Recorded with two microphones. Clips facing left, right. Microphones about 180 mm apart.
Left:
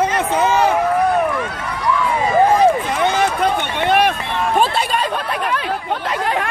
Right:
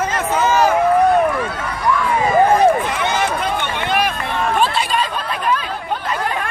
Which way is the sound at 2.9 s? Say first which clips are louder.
Left 2 dB; 50° left (ahead or behind).